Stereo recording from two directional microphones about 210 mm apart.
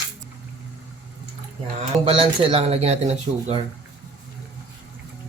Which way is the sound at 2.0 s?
25° right (ahead or behind).